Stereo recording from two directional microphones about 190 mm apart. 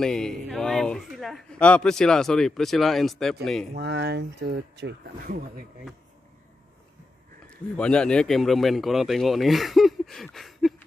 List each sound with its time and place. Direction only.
0.0 s a man's voice: 5° left (ahead or behind)
3.7 s speech: 60° right (ahead or behind)
7.7 s a man's voice: 5° left (ahead or behind)